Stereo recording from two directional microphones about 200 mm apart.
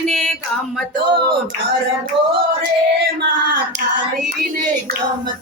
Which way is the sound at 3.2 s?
50° right (ahead or behind).